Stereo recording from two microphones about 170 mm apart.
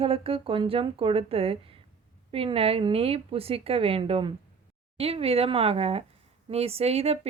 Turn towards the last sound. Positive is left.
turn(degrees=-35)  # may be behind; listen again after turning